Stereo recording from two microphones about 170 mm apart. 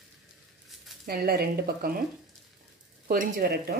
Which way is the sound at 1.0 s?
60° right (ahead or behind).